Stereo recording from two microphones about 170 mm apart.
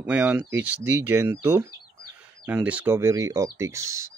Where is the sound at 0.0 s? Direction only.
5° right (ahead or behind).